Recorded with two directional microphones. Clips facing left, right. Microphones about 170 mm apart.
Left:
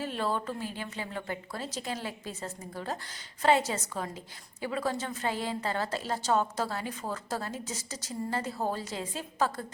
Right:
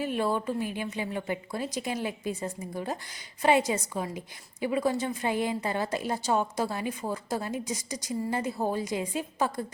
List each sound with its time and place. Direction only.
0.0 s a woman's voice: 15° right (ahead or behind)